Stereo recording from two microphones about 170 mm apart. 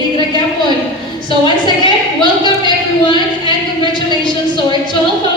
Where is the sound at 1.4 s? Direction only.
25° left (ahead or behind).